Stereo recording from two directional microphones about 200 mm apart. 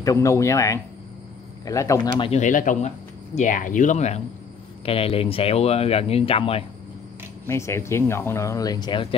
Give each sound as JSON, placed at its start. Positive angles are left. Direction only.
{"t": 0.0, "sound": "speech", "side_deg": 15}
{"t": 2.2, "sound": "speech", "side_deg": 35}
{"t": 7.4, "sound": "speech", "side_deg": 15}